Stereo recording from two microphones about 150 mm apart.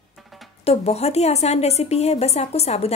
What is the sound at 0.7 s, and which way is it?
A woman's voice, 45° left (ahead or behind).